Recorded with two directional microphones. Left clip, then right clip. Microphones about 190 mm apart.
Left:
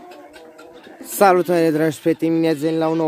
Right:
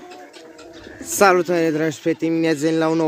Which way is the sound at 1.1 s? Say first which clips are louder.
Left 1 dB; 15° left (ahead or behind).